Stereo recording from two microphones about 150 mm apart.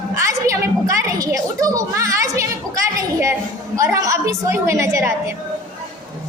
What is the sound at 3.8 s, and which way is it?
A woman's voice, 20° right (ahead or behind).